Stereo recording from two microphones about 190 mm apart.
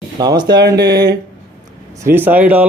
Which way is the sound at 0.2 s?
20° right (ahead or behind).